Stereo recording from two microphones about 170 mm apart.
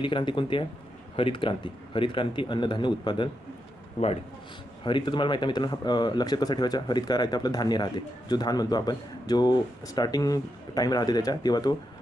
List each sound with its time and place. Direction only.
0.0 s speech: 30° left (ahead or behind)
4.8 s speech: 30° left (ahead or behind)